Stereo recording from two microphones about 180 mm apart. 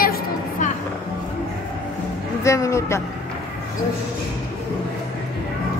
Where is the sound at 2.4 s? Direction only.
15° left (ahead or behind).